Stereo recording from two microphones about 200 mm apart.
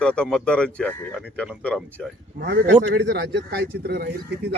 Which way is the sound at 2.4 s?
60° right (ahead or behind).